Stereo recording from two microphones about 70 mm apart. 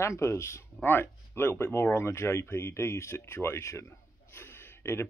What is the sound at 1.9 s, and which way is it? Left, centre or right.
Speech, left.